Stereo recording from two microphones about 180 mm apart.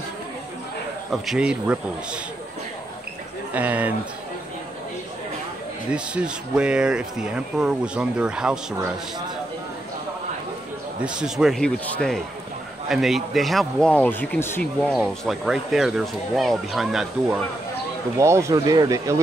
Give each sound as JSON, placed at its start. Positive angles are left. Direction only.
{"t": 1.1, "sound": "speech", "side_deg": 0}
{"t": 3.5, "sound": "speech", "side_deg": -10}
{"t": 5.9, "sound": "speech", "side_deg": -5}
{"t": 11.1, "sound": "speech", "side_deg": -5}
{"t": 18.1, "sound": "speech", "side_deg": -15}